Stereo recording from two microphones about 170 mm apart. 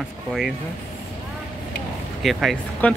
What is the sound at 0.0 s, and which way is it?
Speech, centre (ahead or behind).